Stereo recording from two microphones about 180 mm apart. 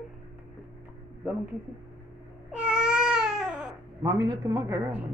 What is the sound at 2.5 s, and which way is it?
Baby cry, 5° right (ahead or behind).